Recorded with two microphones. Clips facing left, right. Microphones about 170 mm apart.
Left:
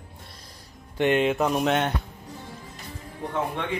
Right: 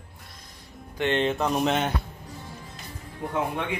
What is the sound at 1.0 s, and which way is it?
Speech, 10° left (ahead or behind).